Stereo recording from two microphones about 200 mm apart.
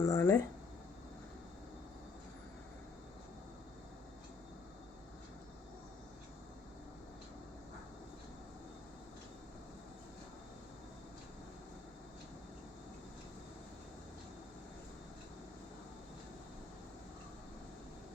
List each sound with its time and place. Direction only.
0.0 s speech: 15° left (ahead or behind)